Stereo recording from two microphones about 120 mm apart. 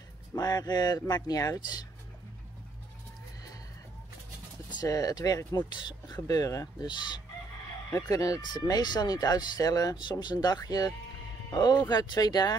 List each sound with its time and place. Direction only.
0.4 s speech: 30° left (ahead or behind)
4.7 s speech: 30° left (ahead or behind)